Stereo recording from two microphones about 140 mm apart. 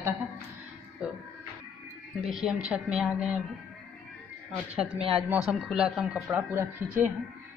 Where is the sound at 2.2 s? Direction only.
5° right (ahead or behind).